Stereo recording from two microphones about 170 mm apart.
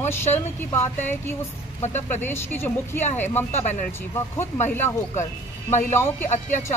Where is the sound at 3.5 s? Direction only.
40° left (ahead or behind).